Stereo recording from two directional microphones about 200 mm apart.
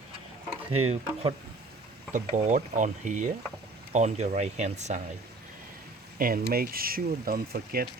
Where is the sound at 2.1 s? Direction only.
40° right (ahead or behind).